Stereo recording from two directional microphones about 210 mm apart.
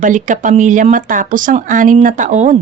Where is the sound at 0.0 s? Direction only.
35° right (ahead or behind).